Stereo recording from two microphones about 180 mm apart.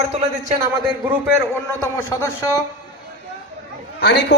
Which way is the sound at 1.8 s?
15° left (ahead or behind).